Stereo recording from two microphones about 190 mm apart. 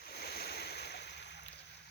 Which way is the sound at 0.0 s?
55° left (ahead or behind).